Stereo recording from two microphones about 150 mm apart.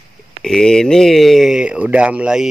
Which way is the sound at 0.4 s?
5° left (ahead or behind).